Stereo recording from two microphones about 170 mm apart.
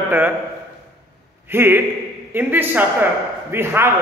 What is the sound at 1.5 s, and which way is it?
A man's voice, 15° right (ahead or behind).